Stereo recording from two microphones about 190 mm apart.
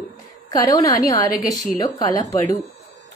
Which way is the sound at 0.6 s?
20° left (ahead or behind).